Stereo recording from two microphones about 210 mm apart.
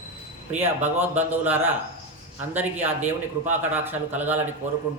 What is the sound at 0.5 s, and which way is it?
A woman's voice, 10° right (ahead or behind).